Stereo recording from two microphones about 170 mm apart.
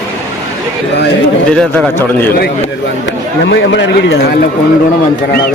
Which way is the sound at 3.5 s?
90° left.